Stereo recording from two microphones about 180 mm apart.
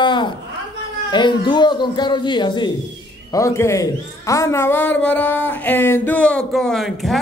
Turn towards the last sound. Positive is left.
turn(degrees=0)  # may be behind; listen again after turning